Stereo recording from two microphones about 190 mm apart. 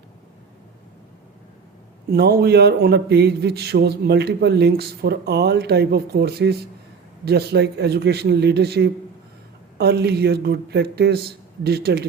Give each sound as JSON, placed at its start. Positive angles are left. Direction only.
{"t": 2.0, "sound": "a man's voice", "side_deg": -55}